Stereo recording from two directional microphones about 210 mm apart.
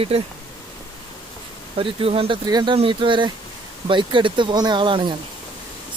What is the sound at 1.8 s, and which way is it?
Speech, 25° right (ahead or behind).